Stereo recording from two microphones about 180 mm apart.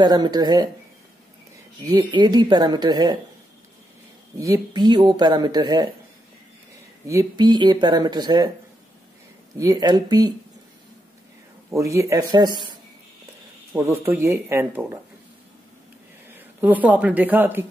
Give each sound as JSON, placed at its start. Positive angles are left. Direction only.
{"t": 0.0, "sound": "speech", "side_deg": -25}
{"t": 1.9, "sound": "speech", "side_deg": -25}
{"t": 4.4, "sound": "speech", "side_deg": -20}
{"t": 7.1, "sound": "speech", "side_deg": -20}
{"t": 9.6, "sound": "speech", "side_deg": -20}
{"t": 11.7, "sound": "speech", "side_deg": -15}
{"t": 13.7, "sound": "speech", "side_deg": -10}
{"t": 16.3, "sound": "speech", "side_deg": -10}